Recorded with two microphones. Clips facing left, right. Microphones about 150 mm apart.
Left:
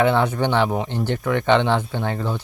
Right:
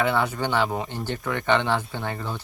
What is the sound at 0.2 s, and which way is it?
A man's voice, 20° left (ahead or behind).